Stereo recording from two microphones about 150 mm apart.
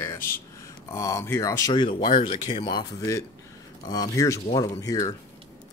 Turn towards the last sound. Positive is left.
turn(degrees=25)  # may be behind; listen again after turning